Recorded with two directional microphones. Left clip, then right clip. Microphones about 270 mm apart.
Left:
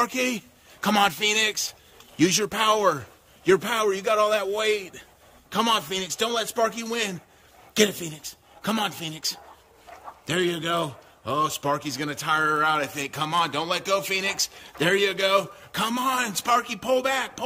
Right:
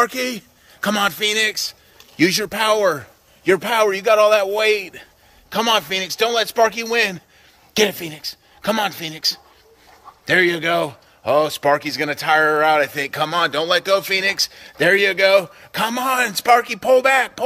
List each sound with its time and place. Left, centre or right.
0.0 s a man's voice: centre